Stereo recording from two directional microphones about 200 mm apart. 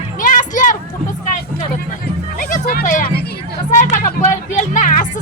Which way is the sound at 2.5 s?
45° left (ahead or behind).